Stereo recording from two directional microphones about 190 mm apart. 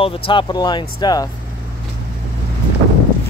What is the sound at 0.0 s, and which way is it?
Speech, 25° left (ahead or behind).